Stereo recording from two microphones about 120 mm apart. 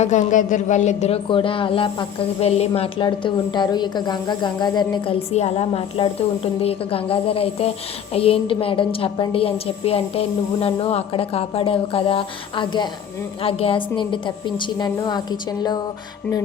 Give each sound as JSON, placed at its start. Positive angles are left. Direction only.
{"t": 0.0, "sound": "speech", "side_deg": 90}
{"t": 1.3, "sound": "a woman's voice", "side_deg": 45}
{"t": 3.1, "sound": "a woman's voice", "side_deg": 40}
{"t": 5.3, "sound": "a woman's voice", "side_deg": 60}
{"t": 13.4, "sound": "a woman's voice", "side_deg": 50}